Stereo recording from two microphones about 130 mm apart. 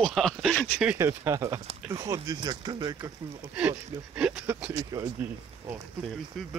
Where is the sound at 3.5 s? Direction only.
10° right (ahead or behind).